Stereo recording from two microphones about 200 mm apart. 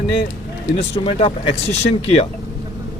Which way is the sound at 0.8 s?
30° left (ahead or behind).